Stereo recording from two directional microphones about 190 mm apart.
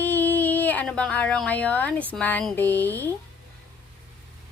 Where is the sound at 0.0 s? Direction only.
10° left (ahead or behind).